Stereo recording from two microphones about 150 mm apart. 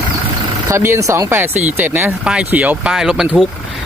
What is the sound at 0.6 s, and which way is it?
Speech, 20° right (ahead or behind).